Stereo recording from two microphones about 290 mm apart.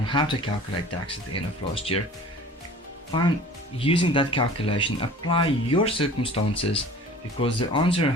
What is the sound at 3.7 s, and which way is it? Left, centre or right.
Speech, centre.